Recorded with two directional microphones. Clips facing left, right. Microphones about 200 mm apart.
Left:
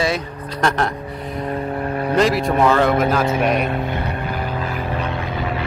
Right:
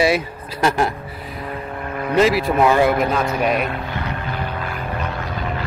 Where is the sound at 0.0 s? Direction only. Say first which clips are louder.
Right 3 dB; 10° right (ahead or behind).